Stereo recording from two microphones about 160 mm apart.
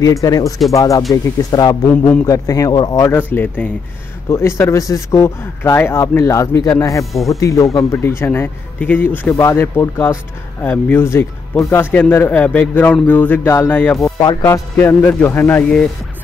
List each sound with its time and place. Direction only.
0.0 s speech: 20° left (ahead or behind)